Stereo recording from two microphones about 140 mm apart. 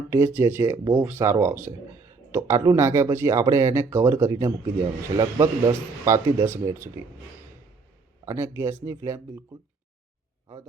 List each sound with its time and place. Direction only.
0.1 s a man's voice: 20° right (ahead or behind)
8.2 s a man's voice: 20° right (ahead or behind)